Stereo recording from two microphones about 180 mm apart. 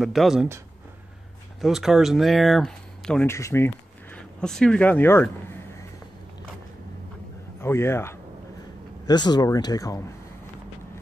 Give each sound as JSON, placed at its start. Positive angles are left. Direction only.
{"t": 0.0, "sound": "speech", "side_deg": 0}
{"t": 1.6, "sound": "speech", "side_deg": 0}
{"t": 3.3, "sound": "speech", "side_deg": 15}
{"t": 7.6, "sound": "a man's voice", "side_deg": 15}